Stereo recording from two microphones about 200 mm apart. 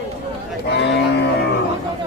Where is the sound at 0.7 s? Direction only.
60° left (ahead or behind).